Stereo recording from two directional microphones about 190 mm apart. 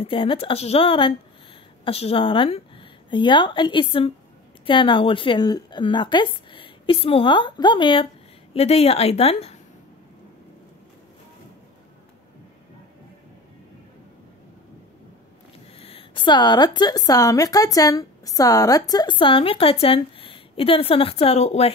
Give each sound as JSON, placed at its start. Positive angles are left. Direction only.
{"t": 0.0, "sound": "a woman's voice", "side_deg": 30}
{"t": 15.8, "sound": "a woman's voice", "side_deg": 30}